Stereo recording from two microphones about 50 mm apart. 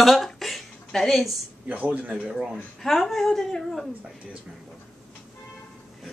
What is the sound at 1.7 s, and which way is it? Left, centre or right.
Speech, right.